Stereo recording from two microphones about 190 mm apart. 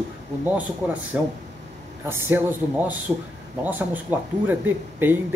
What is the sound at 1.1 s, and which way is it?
Speech, 10° right (ahead or behind).